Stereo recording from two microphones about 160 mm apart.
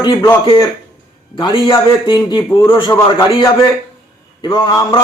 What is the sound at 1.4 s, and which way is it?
A man's voice, 30° left (ahead or behind).